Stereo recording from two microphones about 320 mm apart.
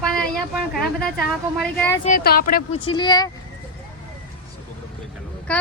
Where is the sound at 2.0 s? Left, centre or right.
Left.